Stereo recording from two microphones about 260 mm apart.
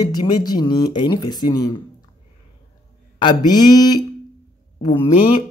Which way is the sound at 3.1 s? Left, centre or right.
Centre.